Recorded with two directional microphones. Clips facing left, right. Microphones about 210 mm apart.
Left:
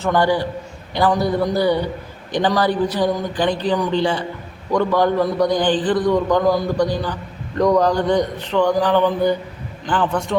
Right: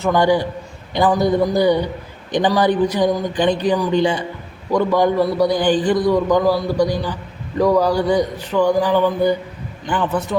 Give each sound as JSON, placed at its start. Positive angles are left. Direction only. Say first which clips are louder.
{"t": 0.0, "sound": "a man's voice", "louder": "right 2 dB", "side_deg": -15}